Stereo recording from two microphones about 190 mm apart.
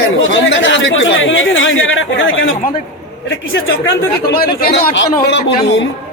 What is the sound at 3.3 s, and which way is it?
Speech, 80° left.